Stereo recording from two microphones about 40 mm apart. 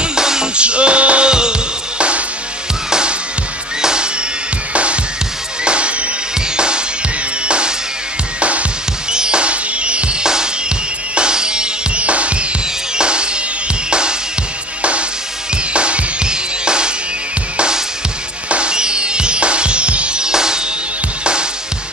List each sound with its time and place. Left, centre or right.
0.0 s music: centre
0.6 s music: right
4.7 s music: right
9.1 s music: right
10.2 s music: centre
12.0 s music: right